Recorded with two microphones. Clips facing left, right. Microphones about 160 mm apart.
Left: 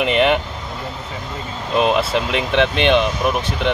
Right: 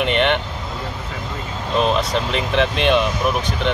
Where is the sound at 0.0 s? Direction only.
5° left (ahead or behind).